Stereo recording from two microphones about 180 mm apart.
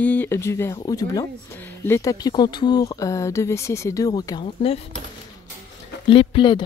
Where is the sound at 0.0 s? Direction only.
10° left (ahead or behind); by 4.7 s 25° left (ahead or behind).